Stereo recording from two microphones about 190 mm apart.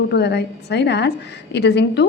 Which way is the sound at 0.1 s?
60° left (ahead or behind).